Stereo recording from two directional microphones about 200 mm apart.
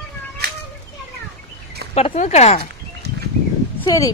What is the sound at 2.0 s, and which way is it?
Speech, 35° left (ahead or behind).